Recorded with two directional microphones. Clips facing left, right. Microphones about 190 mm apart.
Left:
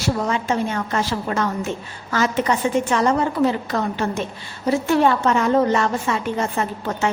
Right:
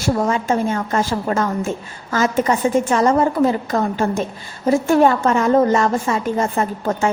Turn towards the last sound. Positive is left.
turn(degrees=-40)  # may be behind; listen again after turning